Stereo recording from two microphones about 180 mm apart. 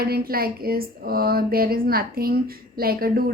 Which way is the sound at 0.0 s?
55° right (ahead or behind).